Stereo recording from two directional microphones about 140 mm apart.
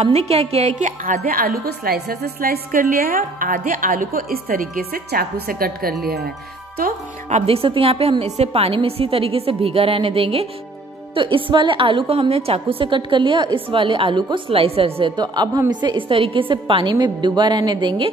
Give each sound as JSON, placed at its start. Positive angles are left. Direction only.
{"t": 0.0, "sound": "a woman's voice", "side_deg": -50}
{"t": 7.2, "sound": "a woman's voice", "side_deg": -50}